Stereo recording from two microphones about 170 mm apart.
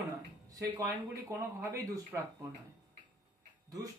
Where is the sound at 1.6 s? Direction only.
20° right (ahead or behind).